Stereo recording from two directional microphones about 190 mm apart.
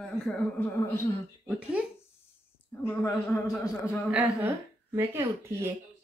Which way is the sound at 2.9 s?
5° left (ahead or behind).